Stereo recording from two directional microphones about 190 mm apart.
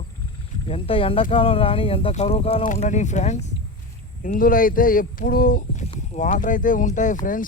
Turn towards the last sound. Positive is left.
turn(degrees=45)  # may be behind; listen again after turning